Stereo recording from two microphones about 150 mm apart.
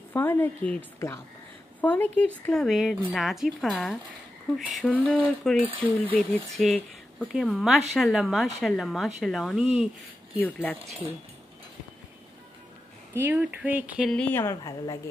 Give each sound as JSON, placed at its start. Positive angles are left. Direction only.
{"t": 0.1, "sound": "speech", "side_deg": 15}
{"t": 10.4, "sound": "speech", "side_deg": 10}
{"t": 13.1, "sound": "speech", "side_deg": -15}
{"t": 14.1, "sound": "a woman's voice", "side_deg": 10}